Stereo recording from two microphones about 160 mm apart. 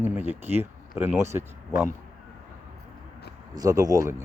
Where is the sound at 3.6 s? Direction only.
20° right (ahead or behind).